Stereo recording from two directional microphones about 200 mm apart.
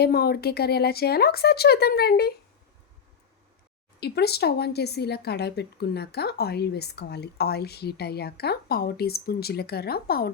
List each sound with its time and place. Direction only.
0.0 s a woman's voice: 50° left (ahead or behind)
4.0 s a woman's voice: 55° left (ahead or behind)